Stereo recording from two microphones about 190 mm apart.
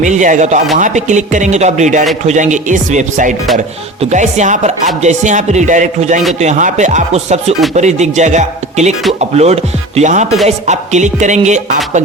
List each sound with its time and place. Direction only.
0.0 s a man's voice: 40° right (ahead or behind)